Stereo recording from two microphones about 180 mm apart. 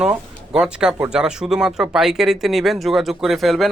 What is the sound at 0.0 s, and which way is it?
Speech, 5° right (ahead or behind).